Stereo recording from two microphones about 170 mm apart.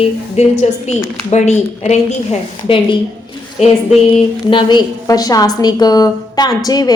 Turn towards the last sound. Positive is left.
turn(degrees=20)  # may be behind; listen again after turning